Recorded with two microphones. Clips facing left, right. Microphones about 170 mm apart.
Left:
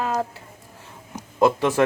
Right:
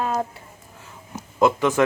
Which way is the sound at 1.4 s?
35° left (ahead or behind).